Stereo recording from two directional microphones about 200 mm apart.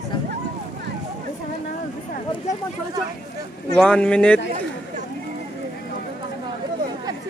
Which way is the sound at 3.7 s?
5° left (ahead or behind).